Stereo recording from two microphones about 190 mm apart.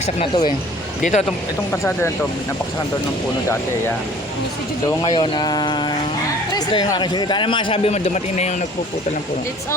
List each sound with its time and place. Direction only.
0.2 s a man's voice: 25° left (ahead or behind)
1.0 s speech: 40° left (ahead or behind)
1.7 s speech: 15° left (ahead or behind)
5.1 s a man's voice: 25° left (ahead or behind)